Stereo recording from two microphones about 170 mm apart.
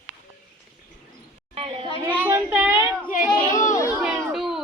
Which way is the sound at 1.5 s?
35° right (ahead or behind).